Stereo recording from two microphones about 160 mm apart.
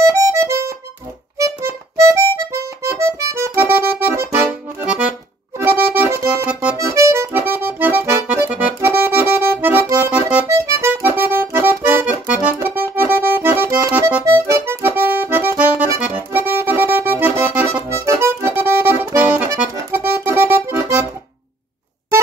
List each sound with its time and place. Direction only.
0.0 s music: 20° right (ahead or behind)
1.4 s accordion: 15° right (ahead or behind)
19.7 s music: 15° right (ahead or behind)